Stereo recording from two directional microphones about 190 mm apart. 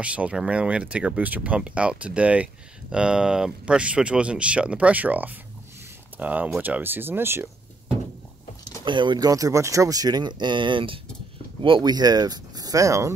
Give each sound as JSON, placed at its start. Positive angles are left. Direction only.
{"t": 0.0, "sound": "speech", "side_deg": -5}
{"t": 8.8, "sound": "speech", "side_deg": -25}